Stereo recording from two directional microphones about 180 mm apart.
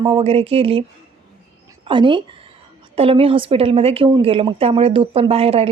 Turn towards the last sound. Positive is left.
turn(degrees=-30)  # may be behind; listen again after turning